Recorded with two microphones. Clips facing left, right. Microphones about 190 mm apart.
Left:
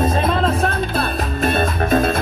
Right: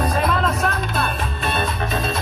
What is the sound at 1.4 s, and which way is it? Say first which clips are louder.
Music: left 6 dB; 50° left (ahead or behind).